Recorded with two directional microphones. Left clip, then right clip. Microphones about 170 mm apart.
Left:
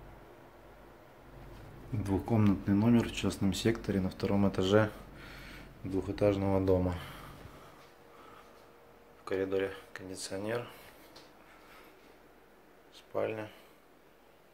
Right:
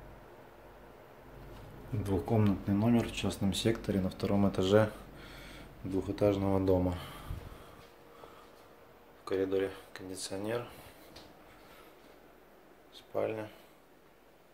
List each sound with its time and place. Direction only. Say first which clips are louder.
2.0 s speech: even; centre (ahead or behind)
9.2 s speech: right 1 dB; centre (ahead or behind)
12.9 s a sound: even; centre (ahead or behind)